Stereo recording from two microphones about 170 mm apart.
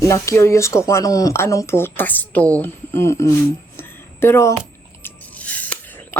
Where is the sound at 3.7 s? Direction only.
15° left (ahead or behind).